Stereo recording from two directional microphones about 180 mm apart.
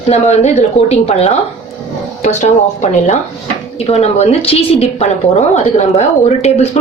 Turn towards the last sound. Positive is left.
turn(degrees=35)  # may be behind; listen again after turning